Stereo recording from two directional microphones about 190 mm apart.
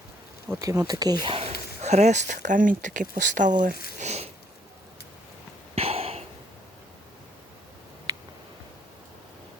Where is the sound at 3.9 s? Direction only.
35° right (ahead or behind).